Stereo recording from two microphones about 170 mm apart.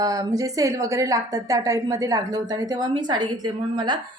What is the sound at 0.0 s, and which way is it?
A woman's voice, 20° right (ahead or behind).